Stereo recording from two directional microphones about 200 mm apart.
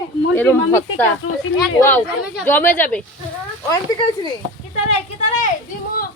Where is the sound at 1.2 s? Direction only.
90° left.